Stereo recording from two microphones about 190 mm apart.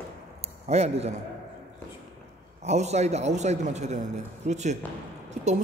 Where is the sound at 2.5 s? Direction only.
35° right (ahead or behind).